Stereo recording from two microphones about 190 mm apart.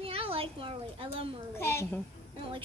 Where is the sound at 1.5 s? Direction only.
15° left (ahead or behind).